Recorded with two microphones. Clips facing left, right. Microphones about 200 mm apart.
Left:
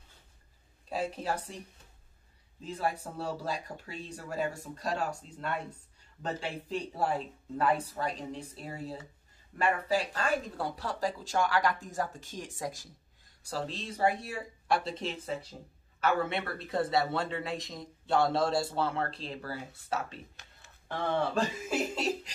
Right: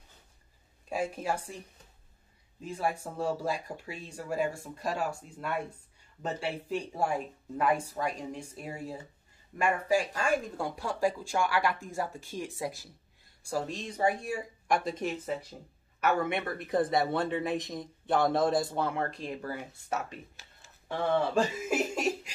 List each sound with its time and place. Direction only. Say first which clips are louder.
0.8 s speech: right 1 dB; 10° right (ahead or behind)
2.6 s a man's voice: right 1 dB; 10° right (ahead or behind)
21.6 s chuckle: right 2 dB; 15° right (ahead or behind)